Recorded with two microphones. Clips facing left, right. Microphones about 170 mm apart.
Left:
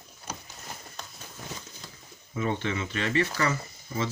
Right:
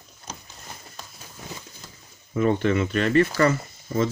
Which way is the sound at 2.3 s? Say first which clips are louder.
Right 8 dB; 55° right (ahead or behind).